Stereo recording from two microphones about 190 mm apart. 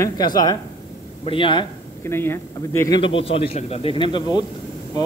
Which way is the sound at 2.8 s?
25° left (ahead or behind).